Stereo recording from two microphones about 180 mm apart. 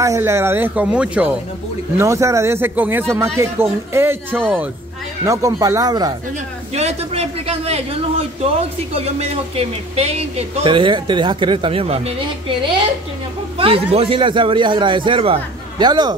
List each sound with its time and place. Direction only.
0.0 s speech: 15° right (ahead or behind)
6.7 s a man's voice: 35° right (ahead or behind)
13.6 s speech: 30° right (ahead or behind)